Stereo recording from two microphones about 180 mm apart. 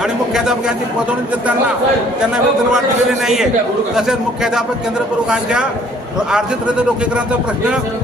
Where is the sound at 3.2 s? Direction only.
Centre (ahead or behind).